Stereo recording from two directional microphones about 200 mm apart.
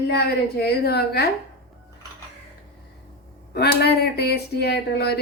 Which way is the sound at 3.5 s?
55° left (ahead or behind).